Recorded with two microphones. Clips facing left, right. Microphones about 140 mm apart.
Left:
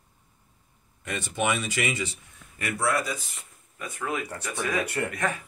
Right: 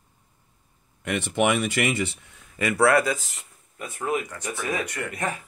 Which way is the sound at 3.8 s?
25° right (ahead or behind).